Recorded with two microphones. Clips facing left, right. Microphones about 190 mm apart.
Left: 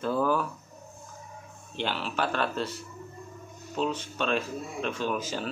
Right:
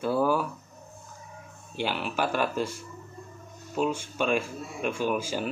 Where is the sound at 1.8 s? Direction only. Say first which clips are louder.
Right 2 dB; 10° right (ahead or behind).